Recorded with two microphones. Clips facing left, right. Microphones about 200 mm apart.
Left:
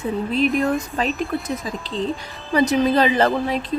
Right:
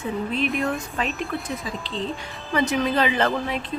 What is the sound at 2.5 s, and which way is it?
Speech, 35° left (ahead or behind).